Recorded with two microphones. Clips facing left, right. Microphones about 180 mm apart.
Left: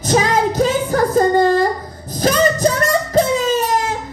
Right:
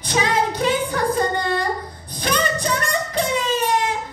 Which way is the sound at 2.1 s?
40° left (ahead or behind).